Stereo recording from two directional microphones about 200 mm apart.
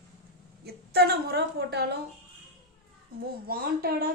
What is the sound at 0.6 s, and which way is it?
A woman's voice, 50° right (ahead or behind).